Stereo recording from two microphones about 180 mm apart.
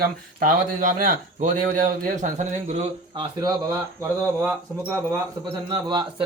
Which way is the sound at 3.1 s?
25° right (ahead or behind).